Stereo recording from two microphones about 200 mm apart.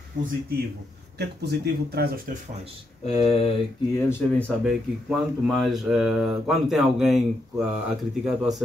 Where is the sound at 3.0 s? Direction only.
30° left (ahead or behind).